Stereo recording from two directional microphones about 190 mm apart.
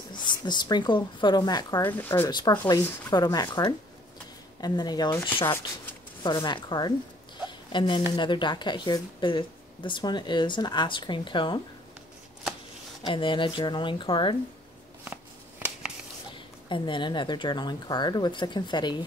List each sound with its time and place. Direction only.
0.1 s speech: 25° left (ahead or behind)
7.4 s a sound: 25° left (ahead or behind)
8.2 s speech: 25° left (ahead or behind)
13.0 s speech: 25° left (ahead or behind)
16.6 s speech: 25° left (ahead or behind)